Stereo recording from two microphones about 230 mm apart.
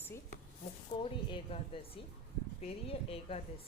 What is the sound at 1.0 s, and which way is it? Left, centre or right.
Speech, left.